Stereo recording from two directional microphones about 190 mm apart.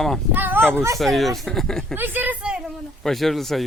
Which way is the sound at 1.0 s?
Centre (ahead or behind).